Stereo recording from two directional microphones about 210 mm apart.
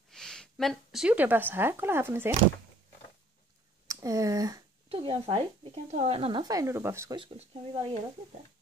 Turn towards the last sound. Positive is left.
turn(degrees=-30)  # may be behind; listen again after turning